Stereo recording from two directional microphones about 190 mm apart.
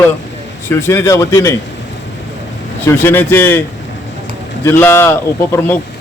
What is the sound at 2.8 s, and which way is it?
Speech, 10° left (ahead or behind).